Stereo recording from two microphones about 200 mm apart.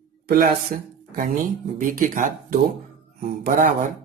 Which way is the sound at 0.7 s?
45° right (ahead or behind).